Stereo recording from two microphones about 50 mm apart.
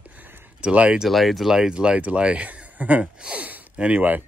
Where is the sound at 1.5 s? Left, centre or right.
Centre.